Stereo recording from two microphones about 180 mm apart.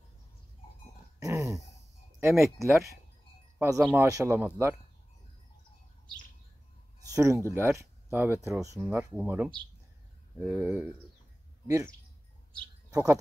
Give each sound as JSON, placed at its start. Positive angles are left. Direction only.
{"t": 1.2, "sound": "a sound", "side_deg": -15}
{"t": 2.1, "sound": "speech", "side_deg": -15}
{"t": 7.1, "sound": "speech", "side_deg": -15}
{"t": 12.9, "sound": "speech", "side_deg": -20}